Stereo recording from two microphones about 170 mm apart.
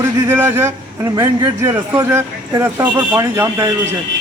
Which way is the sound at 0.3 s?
15° right (ahead or behind).